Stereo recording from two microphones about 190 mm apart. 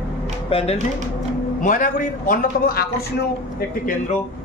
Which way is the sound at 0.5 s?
35° left (ahead or behind).